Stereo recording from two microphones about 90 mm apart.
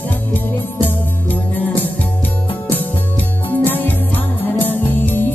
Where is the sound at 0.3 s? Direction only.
20° left (ahead or behind).